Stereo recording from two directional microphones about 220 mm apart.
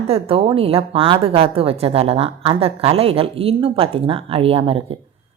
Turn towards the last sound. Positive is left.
turn(degrees=-25)  # may be behind; listen again after turning